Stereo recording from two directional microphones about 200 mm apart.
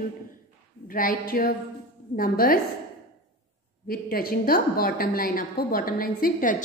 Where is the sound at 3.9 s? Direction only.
45° left (ahead or behind).